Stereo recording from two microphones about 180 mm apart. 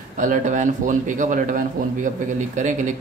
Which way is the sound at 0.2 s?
45° right (ahead or behind).